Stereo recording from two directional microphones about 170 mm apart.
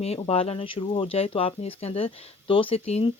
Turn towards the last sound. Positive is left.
turn(degrees=35)  # may be behind; listen again after turning